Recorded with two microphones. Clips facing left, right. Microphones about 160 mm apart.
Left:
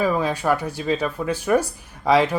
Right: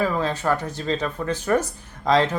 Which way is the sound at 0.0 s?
15° left (ahead or behind).